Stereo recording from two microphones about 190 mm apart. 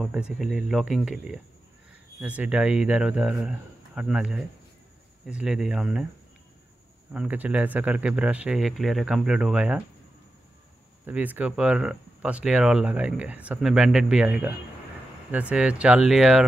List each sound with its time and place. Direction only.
0.0 s speech: 5° right (ahead or behind)
7.1 s speech: 10° right (ahead or behind)
11.1 s speech: 10° right (ahead or behind)